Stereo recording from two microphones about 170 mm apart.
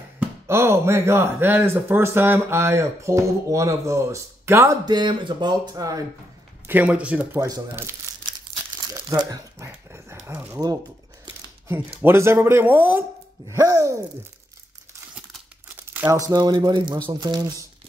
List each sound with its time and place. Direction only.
0.5 s speech: 15° right (ahead or behind)
6.7 s speech: 10° right (ahead or behind)
12.0 s speech: 15° right (ahead or behind)
15.1 s speech: 10° right (ahead or behind); by 17.6 s 25° right (ahead or behind)